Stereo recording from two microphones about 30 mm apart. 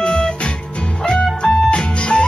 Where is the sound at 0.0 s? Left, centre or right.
Left.